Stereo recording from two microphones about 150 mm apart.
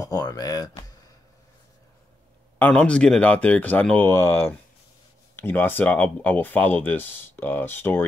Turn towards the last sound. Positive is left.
turn(degrees=15)  # may be behind; listen again after turning